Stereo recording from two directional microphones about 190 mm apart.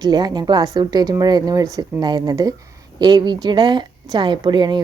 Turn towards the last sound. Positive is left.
turn(degrees=-25)  # may be behind; listen again after turning